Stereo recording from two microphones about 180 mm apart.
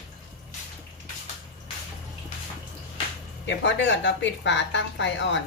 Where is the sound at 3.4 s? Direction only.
85° left.